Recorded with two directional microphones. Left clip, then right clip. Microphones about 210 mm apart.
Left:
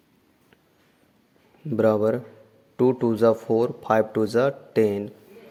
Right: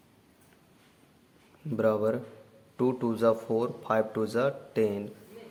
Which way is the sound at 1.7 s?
30° left (ahead or behind).